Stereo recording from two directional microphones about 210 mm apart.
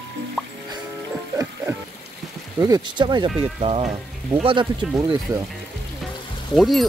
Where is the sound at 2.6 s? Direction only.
20° right (ahead or behind).